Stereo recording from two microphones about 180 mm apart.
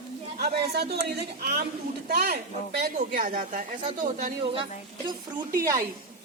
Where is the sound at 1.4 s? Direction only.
55° right (ahead or behind).